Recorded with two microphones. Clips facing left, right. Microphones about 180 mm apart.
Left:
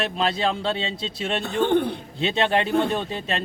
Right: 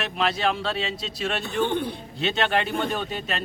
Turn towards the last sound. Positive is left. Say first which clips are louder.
# left 3 dB
turn(degrees=30)  # may be behind; listen again after turning